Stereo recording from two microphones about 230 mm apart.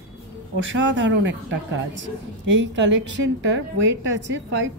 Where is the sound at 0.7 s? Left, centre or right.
Right.